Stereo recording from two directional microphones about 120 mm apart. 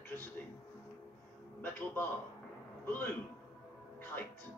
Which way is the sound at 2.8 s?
15° left (ahead or behind).